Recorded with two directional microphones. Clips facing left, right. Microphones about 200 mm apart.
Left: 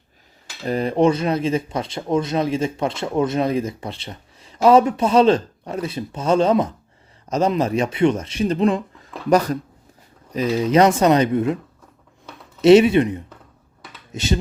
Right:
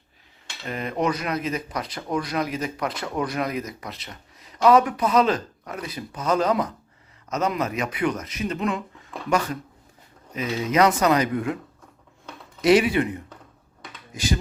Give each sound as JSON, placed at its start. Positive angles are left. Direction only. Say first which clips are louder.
{"t": 0.6, "sound": "speech", "louder": "left 8 dB", "side_deg": 35}
{"t": 12.6, "sound": "speech", "louder": "left 7 dB", "side_deg": 25}